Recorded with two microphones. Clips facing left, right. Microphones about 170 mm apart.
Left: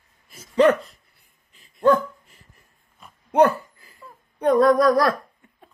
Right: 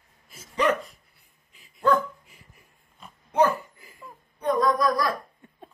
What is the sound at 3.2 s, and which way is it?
Dog, 65° left (ahead or behind).